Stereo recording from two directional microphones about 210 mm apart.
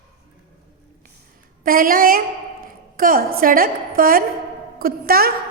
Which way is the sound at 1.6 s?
40° right (ahead or behind).